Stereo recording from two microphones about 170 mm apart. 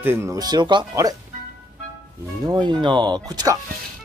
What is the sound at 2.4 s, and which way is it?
Speech, 25° right (ahead or behind).